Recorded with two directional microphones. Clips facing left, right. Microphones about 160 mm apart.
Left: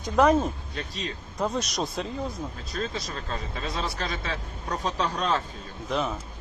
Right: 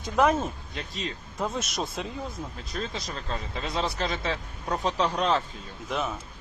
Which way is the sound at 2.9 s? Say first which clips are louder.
Left 1 dB; 20° right (ahead or behind).